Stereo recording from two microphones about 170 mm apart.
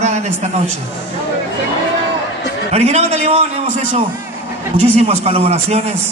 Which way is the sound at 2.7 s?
40° right (ahead or behind).